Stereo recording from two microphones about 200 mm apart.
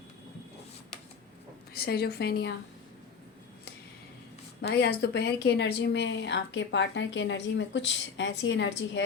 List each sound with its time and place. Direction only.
1.7 s a woman's voice: 50° left (ahead or behind)
4.6 s speech: 55° left (ahead or behind)